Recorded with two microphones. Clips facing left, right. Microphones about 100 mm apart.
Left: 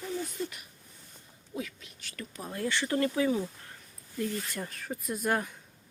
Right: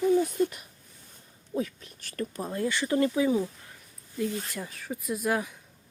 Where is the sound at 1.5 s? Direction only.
40° right (ahead or behind).